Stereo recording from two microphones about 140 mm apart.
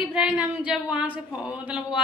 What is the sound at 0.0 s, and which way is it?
A woman's voice, 5° right (ahead or behind).